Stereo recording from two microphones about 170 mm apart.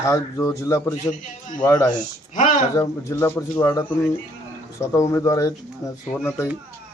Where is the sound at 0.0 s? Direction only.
15° left (ahead or behind).